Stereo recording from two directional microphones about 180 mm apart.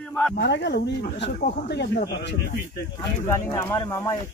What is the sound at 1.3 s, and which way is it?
Speech, 60° left (ahead or behind).